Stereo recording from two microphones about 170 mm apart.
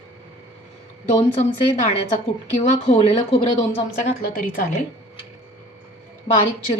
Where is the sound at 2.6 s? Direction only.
35° left (ahead or behind).